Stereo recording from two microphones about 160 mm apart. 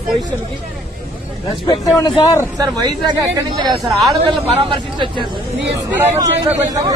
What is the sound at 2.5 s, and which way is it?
Speech, 25° right (ahead or behind).